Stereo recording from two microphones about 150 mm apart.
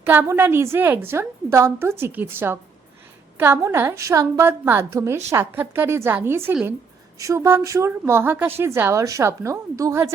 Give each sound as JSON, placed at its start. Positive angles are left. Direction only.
{"t": 0.0, "sound": "a woman's voice", "side_deg": -15}